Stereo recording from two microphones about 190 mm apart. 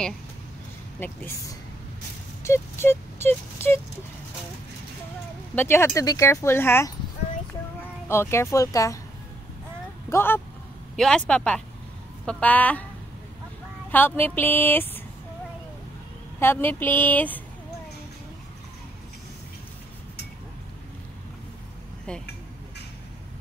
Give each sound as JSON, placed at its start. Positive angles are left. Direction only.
{"t": 0.9, "sound": "speech", "side_deg": 10}
{"t": 2.4, "sound": "a sound", "side_deg": 15}
{"t": 5.6, "sound": "speech", "side_deg": 10}
{"t": 8.1, "sound": "speech", "side_deg": 15}
{"t": 10.0, "sound": "speech", "side_deg": 10}
{"t": 13.9, "sound": "speech", "side_deg": 10}
{"t": 16.3, "sound": "speech", "side_deg": 10}